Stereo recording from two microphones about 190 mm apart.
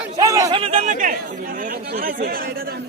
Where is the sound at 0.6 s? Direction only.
35° right (ahead or behind).